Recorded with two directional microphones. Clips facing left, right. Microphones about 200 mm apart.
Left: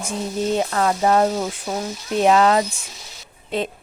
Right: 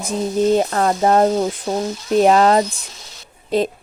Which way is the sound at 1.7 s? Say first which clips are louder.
Right 5 dB; 25° right (ahead or behind).